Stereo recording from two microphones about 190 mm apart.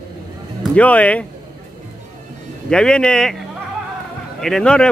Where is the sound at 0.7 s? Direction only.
5° left (ahead or behind).